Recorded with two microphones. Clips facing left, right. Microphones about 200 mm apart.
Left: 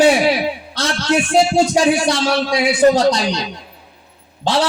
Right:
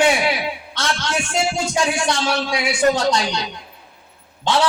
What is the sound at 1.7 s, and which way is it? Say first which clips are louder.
Speech: left 6 dB; 35° left (ahead or behind).